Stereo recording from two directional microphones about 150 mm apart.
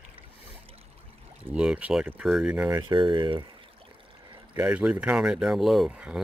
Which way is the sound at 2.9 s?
35° right (ahead or behind).